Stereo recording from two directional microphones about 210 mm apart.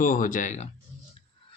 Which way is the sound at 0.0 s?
40° left (ahead or behind).